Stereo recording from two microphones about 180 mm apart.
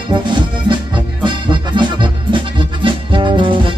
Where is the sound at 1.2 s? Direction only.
25° right (ahead or behind).